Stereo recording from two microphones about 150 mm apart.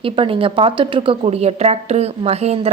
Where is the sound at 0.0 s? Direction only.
35° right (ahead or behind).